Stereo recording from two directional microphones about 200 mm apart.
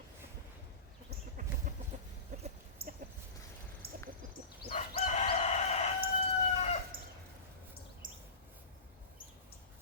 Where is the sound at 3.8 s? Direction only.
50° right (ahead or behind).